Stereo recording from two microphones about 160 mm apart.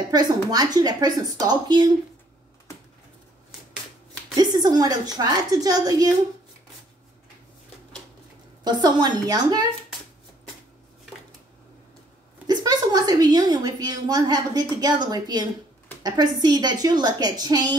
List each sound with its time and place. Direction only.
0.1 s a woman's voice: 25° right (ahead or behind)
4.4 s a woman's voice: 25° right (ahead or behind)
8.6 s a woman's voice: 25° right (ahead or behind)
12.4 s a woman's voice: 25° right (ahead or behind)